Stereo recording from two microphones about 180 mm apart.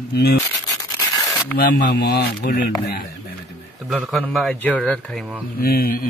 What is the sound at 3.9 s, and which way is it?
Speech, centre (ahead or behind).